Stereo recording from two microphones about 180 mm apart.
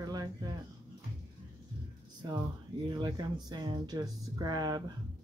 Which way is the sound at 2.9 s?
25° right (ahead or behind).